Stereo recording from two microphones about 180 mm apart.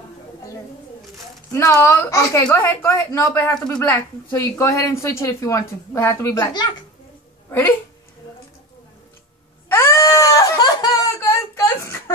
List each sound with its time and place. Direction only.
1.5 s speech: 15° left (ahead or behind)
7.4 s speech: 10° left (ahead or behind)
9.7 s a sound: 15° left (ahead or behind)